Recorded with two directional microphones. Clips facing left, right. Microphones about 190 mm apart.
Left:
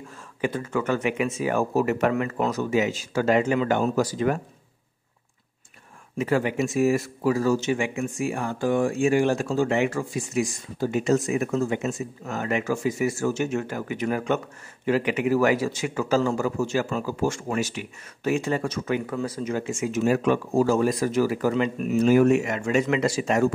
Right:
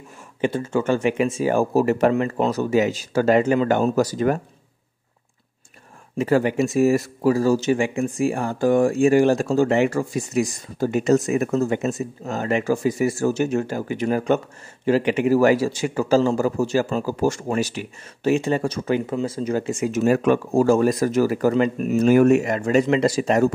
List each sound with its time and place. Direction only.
0.4 s speech: 30° right (ahead or behind)
6.1 s speech: 35° right (ahead or behind); by 22.4 s 55° right (ahead or behind)
22.4 s speech: 35° right (ahead or behind)